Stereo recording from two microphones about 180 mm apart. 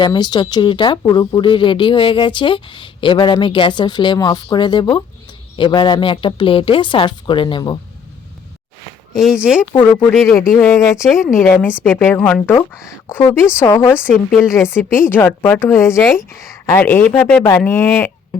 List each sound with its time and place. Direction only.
0.0 s speech: 25° left (ahead or behind)
9.1 s speech: 5° right (ahead or behind)
9.8 s speech: 10° left (ahead or behind)
11.1 s speech: centre (ahead or behind)
11.3 s speech: 10° left (ahead or behind)